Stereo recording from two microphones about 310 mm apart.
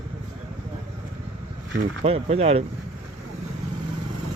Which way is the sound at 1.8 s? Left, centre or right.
Centre.